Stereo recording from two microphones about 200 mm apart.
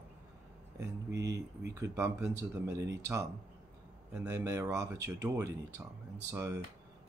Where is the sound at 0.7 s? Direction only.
60° right (ahead or behind).